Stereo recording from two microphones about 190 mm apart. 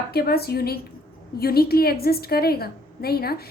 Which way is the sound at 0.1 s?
55° left (ahead or behind).